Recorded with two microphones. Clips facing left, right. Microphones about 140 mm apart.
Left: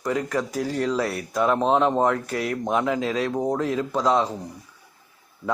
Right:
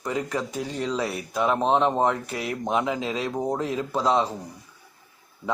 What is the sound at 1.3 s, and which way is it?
Speech, centre (ahead or behind).